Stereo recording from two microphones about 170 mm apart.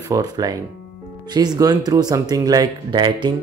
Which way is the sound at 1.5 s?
20° right (ahead or behind).